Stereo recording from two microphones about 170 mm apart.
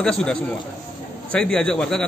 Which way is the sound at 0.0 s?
5° left (ahead or behind).